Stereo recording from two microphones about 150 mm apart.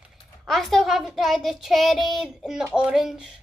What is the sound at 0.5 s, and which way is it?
A child's voice, centre (ahead or behind).